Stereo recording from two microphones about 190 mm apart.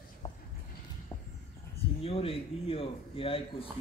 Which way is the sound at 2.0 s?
30° left (ahead or behind).